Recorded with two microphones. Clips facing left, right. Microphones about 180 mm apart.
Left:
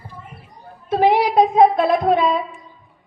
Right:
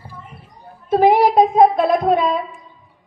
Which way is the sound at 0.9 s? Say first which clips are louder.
Right 3 dB; 50° right (ahead or behind).